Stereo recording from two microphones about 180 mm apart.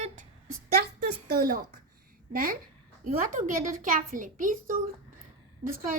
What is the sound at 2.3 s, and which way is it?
Speech, 55° right (ahead or behind).